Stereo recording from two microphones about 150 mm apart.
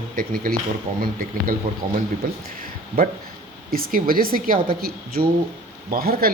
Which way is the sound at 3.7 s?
75° right (ahead or behind).